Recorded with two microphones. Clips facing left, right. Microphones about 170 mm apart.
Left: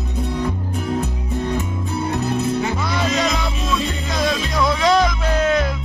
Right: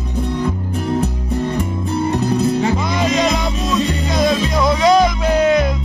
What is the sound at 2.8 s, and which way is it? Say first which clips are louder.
Music: right 3 dB; 15° right (ahead or behind).